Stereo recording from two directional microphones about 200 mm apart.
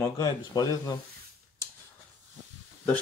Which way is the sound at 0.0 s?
20° left (ahead or behind).